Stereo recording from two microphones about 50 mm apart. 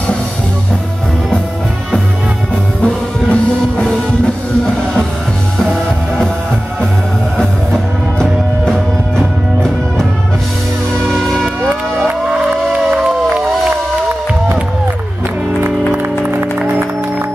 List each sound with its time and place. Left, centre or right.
2.8 s music: left
5.6 s music: centre
7.3 s music: centre
11.1 s music: centre
15.9 s music: right